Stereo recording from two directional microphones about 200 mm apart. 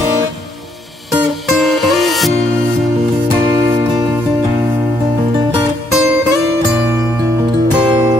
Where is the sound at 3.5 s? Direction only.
20° right (ahead or behind).